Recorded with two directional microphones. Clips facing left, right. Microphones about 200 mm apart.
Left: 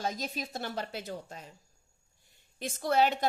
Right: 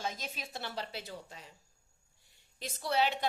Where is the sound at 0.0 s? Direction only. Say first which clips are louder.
Left 5 dB; 40° left (ahead or behind).